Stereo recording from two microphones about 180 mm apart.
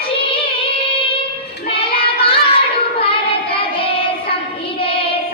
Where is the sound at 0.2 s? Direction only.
30° left (ahead or behind).